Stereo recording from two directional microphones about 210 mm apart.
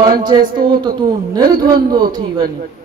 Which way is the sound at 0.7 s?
20° right (ahead or behind).